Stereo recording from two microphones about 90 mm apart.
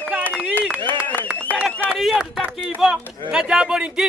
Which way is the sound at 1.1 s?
20° left (ahead or behind).